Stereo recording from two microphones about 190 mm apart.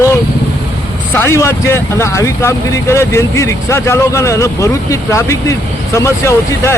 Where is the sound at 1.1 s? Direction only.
15° left (ahead or behind).